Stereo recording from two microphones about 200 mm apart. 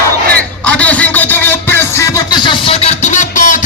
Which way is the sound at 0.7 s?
5° left (ahead or behind).